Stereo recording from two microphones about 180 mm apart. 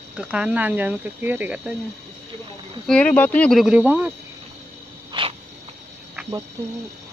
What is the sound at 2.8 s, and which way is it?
Speech, 5° left (ahead or behind).